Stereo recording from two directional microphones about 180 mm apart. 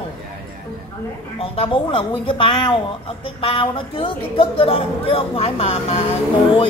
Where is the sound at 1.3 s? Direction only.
30° left (ahead or behind).